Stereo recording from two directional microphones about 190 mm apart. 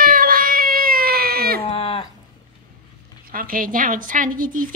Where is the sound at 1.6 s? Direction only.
30° left (ahead or behind).